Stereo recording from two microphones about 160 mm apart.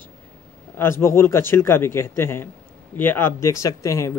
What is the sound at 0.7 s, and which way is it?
Speech, 15° left (ahead or behind).